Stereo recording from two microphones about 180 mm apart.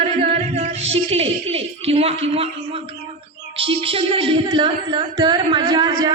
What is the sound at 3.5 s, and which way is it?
Singing, 30° right (ahead or behind).